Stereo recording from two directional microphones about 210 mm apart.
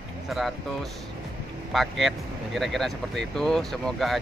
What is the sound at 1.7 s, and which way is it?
Speech, centre (ahead or behind).